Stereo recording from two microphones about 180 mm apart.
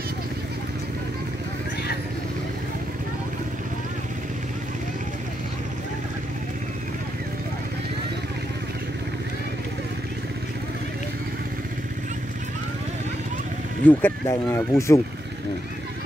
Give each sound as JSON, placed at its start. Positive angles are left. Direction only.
{"t": 13.8, "sound": "speech", "side_deg": 10}